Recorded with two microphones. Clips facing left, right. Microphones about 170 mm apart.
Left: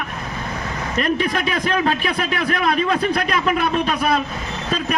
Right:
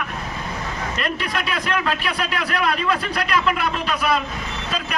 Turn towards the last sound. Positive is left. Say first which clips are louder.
# left 3 dB
turn(degrees=45)  # may be behind; listen again after turning